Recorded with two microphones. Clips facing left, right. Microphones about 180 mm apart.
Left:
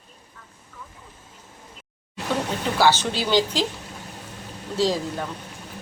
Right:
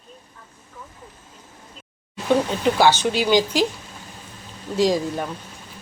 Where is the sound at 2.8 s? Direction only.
15° right (ahead or behind).